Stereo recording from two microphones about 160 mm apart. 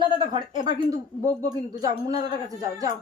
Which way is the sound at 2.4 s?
20° right (ahead or behind).